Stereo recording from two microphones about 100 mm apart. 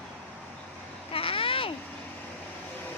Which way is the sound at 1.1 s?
65° left (ahead or behind).